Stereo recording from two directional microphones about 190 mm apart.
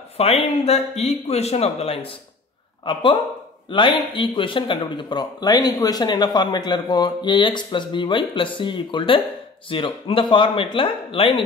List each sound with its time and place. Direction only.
0.2 s speech: 35° left (ahead or behind)